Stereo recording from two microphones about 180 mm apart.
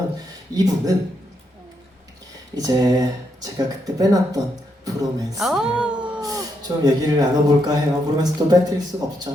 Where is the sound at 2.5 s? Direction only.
20° right (ahead or behind).